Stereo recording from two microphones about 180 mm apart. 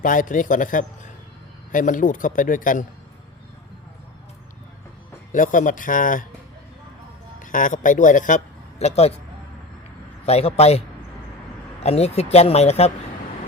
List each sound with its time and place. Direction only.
0.0 s a man's voice: 50° left (ahead or behind)
5.3 s a man's voice: 45° left (ahead or behind)
7.3 s a man's voice: 45° left (ahead or behind)
8.8 s speech: 35° left (ahead or behind)
10.2 s speech: 35° left (ahead or behind)